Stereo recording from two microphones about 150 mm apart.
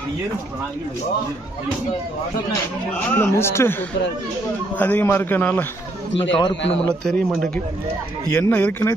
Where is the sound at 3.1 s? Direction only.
15° left (ahead or behind).